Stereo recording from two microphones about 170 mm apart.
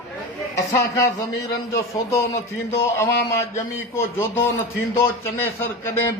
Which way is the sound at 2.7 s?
15° left (ahead or behind).